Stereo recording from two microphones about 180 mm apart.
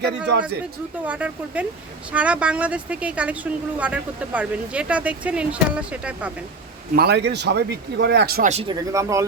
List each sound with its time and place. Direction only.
1.0 s a woman's voice: 10° right (ahead or behind)
6.9 s speech: 65° right (ahead or behind)
8.6 s a woman's voice: 15° right (ahead or behind)